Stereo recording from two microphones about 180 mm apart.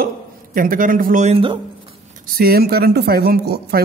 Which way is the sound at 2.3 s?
55° right (ahead or behind).